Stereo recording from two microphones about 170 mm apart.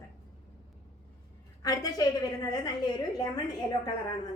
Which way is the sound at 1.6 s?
20° left (ahead or behind).